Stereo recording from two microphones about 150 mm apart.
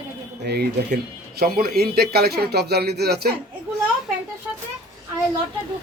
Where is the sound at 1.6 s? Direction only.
90° right.